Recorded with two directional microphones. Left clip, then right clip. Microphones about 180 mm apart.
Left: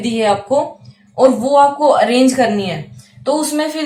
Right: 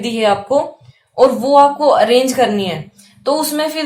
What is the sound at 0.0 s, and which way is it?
A woman's voice, 35° right (ahead or behind).